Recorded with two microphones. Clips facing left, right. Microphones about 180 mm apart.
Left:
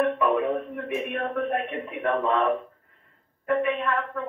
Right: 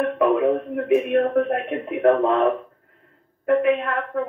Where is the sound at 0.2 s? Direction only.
60° right (ahead or behind).